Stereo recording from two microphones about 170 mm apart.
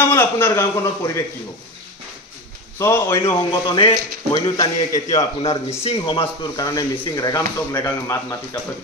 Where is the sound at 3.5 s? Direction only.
30° left (ahead or behind).